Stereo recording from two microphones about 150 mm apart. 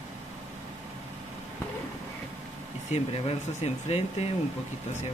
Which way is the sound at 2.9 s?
40° left (ahead or behind).